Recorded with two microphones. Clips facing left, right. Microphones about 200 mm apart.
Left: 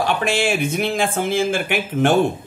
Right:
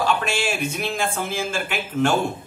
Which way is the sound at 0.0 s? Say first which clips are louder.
Left 3 dB; 55° left (ahead or behind).